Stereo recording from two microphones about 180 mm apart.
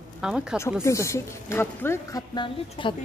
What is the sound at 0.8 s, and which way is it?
Speech, 15° left (ahead or behind).